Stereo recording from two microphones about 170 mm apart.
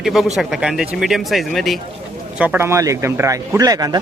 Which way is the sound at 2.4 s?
10° right (ahead or behind).